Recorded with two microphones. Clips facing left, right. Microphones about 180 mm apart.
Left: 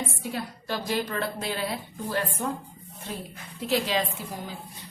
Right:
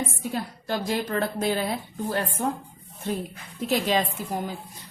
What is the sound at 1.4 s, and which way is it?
Speech, 50° right (ahead or behind).